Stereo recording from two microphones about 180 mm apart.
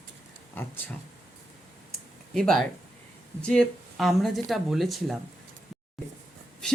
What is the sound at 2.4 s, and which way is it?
A woman's voice, centre (ahead or behind).